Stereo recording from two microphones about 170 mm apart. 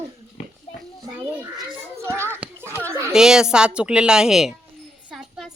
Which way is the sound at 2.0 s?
15° right (ahead or behind).